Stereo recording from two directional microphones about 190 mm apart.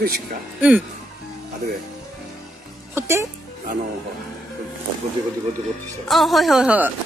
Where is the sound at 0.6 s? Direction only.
10° right (ahead or behind).